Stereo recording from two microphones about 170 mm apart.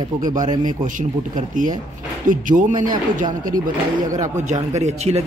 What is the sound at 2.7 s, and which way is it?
Speech, 25° right (ahead or behind).